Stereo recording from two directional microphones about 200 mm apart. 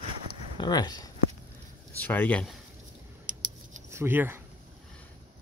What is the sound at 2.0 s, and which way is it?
Speech, 10° left (ahead or behind).